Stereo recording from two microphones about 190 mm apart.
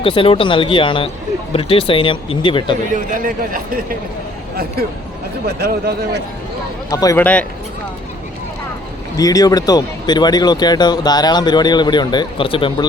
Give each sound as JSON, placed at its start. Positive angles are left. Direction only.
{"t": 0.0, "sound": "speech", "side_deg": 30}
{"t": 2.9, "sound": "speech", "side_deg": -45}
{"t": 5.5, "sound": "speech", "side_deg": -55}
{"t": 6.9, "sound": "a man's voice", "side_deg": 20}
{"t": 9.1, "sound": "speech", "side_deg": 20}